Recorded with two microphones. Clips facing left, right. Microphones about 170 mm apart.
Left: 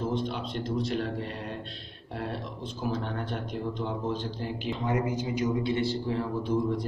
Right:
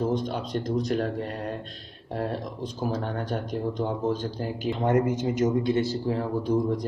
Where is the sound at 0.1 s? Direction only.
45° right (ahead or behind).